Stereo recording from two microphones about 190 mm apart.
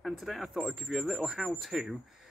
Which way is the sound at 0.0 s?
Centre (ahead or behind).